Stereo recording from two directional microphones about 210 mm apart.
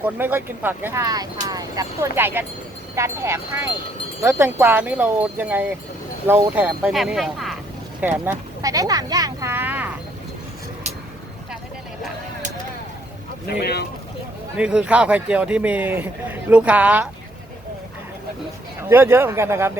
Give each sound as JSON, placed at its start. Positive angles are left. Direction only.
{"t": 0.0, "sound": "wind chime", "side_deg": -10}
{"t": 6.2, "sound": "a man's voice", "side_deg": -10}
{"t": 8.2, "sound": "speech", "side_deg": -15}
{"t": 13.6, "sound": "speech", "side_deg": 50}
{"t": 14.5, "sound": "a man's voice", "side_deg": -5}
{"t": 18.8, "sound": "wind chime", "side_deg": -10}